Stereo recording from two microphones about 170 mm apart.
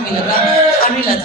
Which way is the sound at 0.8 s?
60° left (ahead or behind).